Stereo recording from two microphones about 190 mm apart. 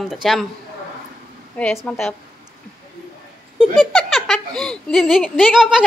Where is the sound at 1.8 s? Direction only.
Centre (ahead or behind).